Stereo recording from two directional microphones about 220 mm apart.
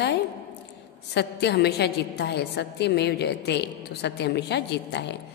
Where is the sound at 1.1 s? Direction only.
50° left (ahead or behind).